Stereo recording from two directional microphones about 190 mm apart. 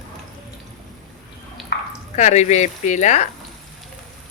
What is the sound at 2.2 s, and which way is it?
Speech, 40° left (ahead or behind).